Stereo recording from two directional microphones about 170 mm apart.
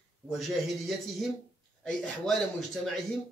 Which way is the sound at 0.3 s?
Centre (ahead or behind).